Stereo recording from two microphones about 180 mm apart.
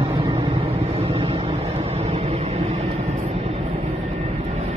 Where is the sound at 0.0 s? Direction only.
30° right (ahead or behind).